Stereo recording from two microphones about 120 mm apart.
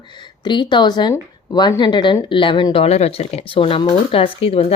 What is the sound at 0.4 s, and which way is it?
Speech, 40° left (ahead or behind).